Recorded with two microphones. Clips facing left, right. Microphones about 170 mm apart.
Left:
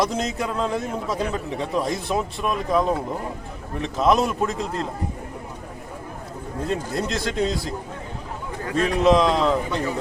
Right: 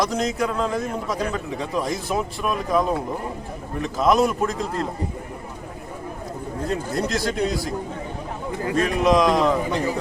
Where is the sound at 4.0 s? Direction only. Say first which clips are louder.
Right 1 dB; centre (ahead or behind).